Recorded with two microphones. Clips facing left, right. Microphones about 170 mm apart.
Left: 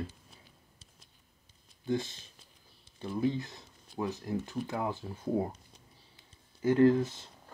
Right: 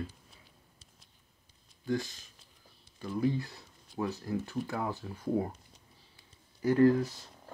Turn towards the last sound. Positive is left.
turn(degrees=20)  # may be behind; listen again after turning